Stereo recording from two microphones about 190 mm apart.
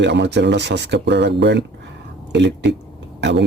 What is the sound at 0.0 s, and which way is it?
Speech, 70° right (ahead or behind).